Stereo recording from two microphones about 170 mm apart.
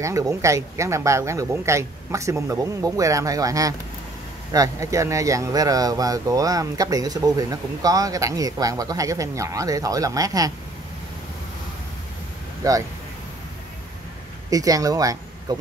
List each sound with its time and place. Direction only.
0.0 s speech: 20° right (ahead or behind)
12.6 s speech: 20° right (ahead or behind)
14.5 s speech: 20° right (ahead or behind)